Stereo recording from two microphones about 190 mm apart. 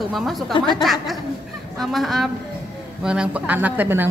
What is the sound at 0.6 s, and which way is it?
Speech, 25° left (ahead or behind).